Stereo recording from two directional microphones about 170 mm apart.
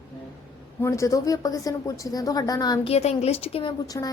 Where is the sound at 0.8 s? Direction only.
20° left (ahead or behind).